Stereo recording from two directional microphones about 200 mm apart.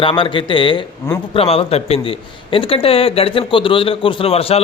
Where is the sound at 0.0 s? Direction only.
25° left (ahead or behind).